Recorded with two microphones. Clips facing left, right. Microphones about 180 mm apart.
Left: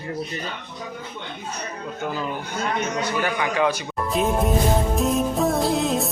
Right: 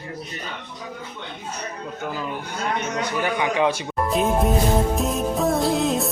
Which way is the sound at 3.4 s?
25° right (ahead or behind).